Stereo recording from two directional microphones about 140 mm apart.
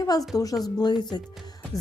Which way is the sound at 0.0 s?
25° left (ahead or behind).